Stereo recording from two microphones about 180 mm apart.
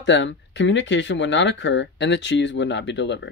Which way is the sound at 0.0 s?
80° left.